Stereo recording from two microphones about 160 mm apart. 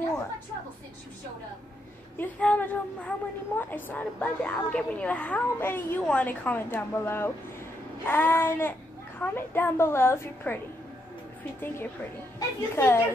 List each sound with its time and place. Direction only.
2.1 s a woman's voice: 10° left (ahead or behind)
11.6 s a woman's voice: 15° left (ahead or behind)